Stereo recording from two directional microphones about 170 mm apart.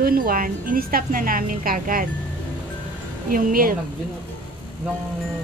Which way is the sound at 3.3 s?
55° right (ahead or behind).